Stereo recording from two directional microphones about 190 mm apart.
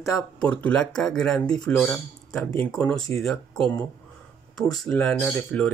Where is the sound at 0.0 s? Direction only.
5° left (ahead or behind).